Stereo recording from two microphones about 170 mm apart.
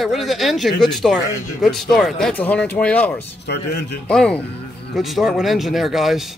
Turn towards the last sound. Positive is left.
turn(degrees=0)  # may be behind; listen again after turning